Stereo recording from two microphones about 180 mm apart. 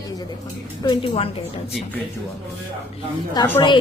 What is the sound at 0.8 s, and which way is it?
Speech, 30° left (ahead or behind).